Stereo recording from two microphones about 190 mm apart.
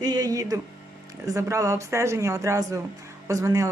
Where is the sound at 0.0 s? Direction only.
20° right (ahead or behind).